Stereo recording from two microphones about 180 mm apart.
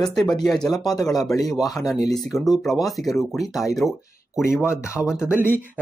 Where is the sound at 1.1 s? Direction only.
20° left (ahead or behind).